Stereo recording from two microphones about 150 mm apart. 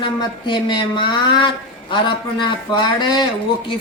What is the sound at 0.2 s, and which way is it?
Speech, 30° left (ahead or behind).